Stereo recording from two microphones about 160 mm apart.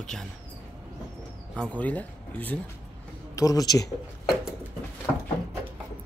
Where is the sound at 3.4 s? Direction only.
25° left (ahead or behind).